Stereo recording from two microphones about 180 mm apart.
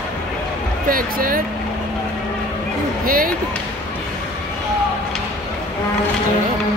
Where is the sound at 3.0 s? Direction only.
50° right (ahead or behind).